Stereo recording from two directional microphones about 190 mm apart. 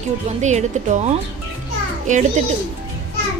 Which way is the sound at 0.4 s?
40° right (ahead or behind).